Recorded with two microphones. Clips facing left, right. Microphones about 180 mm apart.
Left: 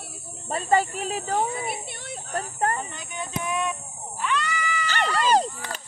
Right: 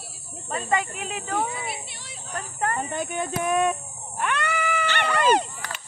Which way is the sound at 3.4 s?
50° right (ahead or behind).